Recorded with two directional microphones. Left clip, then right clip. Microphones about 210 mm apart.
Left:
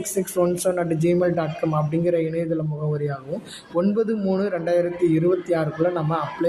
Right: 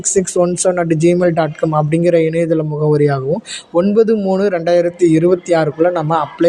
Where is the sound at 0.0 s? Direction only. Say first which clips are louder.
Right 8 dB; 30° right (ahead or behind).